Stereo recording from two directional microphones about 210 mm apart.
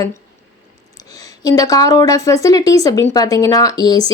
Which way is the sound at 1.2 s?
15° left (ahead or behind).